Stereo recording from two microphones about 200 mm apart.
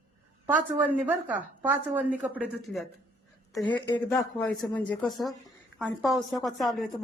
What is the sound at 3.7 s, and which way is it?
Speech, 20° left (ahead or behind).